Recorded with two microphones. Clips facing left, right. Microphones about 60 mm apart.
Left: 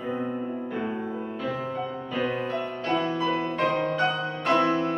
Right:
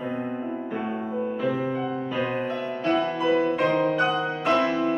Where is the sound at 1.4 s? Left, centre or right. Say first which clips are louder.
Right 3 dB; centre.